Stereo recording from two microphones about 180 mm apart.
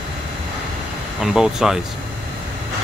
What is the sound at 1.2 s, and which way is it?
Speech, 5° right (ahead or behind).